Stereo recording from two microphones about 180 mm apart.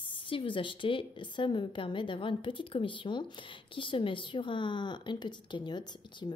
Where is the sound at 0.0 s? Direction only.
30° left (ahead or behind).